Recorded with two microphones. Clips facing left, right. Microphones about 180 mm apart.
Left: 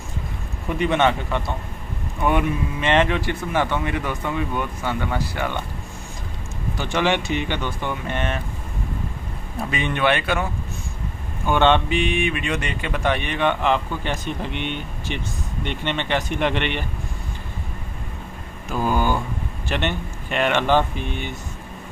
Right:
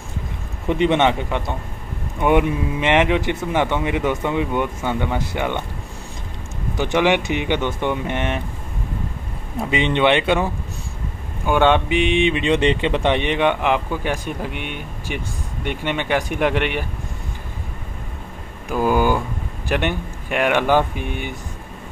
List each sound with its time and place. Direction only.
0.7 s speech: 20° right (ahead or behind)
6.8 s speech: 15° right (ahead or behind)
9.6 s speech: 20° right (ahead or behind)
11.4 s speech: 10° right (ahead or behind)
18.7 s speech: 10° right (ahead or behind)